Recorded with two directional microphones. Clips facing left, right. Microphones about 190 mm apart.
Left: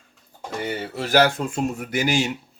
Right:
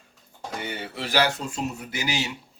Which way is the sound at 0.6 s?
45° left (ahead or behind).